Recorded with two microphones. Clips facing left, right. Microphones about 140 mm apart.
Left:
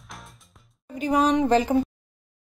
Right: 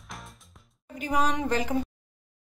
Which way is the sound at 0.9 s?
25° left (ahead or behind).